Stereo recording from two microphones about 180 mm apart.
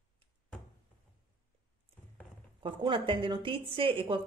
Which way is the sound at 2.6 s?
25° right (ahead or behind).